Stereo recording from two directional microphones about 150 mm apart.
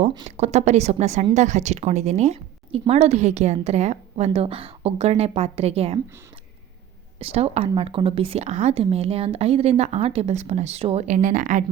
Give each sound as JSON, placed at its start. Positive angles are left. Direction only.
{"t": 0.3, "sound": "a woman's voice", "side_deg": -50}
{"t": 7.2, "sound": "a woman's voice", "side_deg": -40}